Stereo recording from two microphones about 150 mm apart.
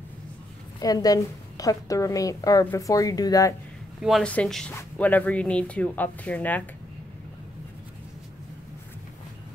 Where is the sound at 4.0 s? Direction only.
Centre (ahead or behind).